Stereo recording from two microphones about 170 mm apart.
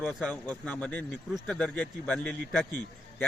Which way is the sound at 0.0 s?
Centre (ahead or behind).